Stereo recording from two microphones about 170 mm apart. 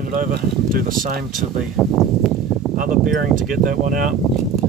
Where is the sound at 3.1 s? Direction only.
50° right (ahead or behind).